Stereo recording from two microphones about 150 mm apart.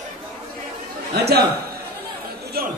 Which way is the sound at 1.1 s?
90° right.